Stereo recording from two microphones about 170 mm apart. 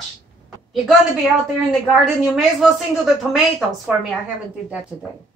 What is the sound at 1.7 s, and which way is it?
A woman's voice, centre (ahead or behind).